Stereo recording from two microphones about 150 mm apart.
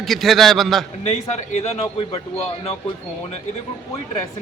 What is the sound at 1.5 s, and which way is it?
Speech, 45° left (ahead or behind).